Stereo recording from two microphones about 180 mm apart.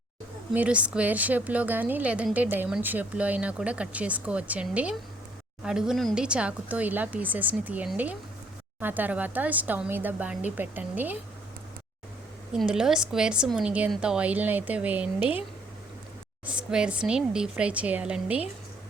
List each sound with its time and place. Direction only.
0.5 s a woman's voice: 5° right (ahead or behind)
12.5 s a woman's voice: 5° right (ahead or behind)
16.6 s a woman's voice: 5° right (ahead or behind)